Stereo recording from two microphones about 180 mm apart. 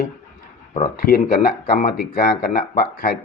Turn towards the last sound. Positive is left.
turn(degrees=55)  # may be behind; listen again after turning